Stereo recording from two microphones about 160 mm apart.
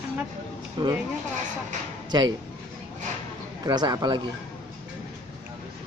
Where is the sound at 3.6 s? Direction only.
25° right (ahead or behind).